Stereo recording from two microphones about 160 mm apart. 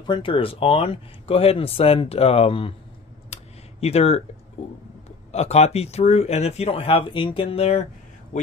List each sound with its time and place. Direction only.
0.0 s speech: 30° left (ahead or behind)
3.3 s a sound: 40° left (ahead or behind)
3.8 s speech: 40° left (ahead or behind)
5.3 s speech: 40° left (ahead or behind)